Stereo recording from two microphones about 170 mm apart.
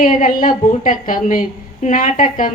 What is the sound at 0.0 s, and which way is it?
A woman's voice, 55° left (ahead or behind).